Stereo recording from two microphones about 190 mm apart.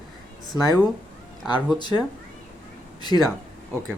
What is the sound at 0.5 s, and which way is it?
Speech, 15° right (ahead or behind).